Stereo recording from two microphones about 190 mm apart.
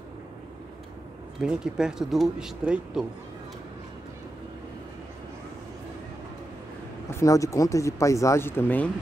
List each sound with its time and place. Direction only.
1.4 s speech: 5° right (ahead or behind)
7.1 s speech: 15° left (ahead or behind)